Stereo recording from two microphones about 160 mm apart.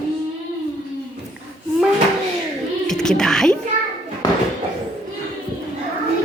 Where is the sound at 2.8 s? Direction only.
5° left (ahead or behind).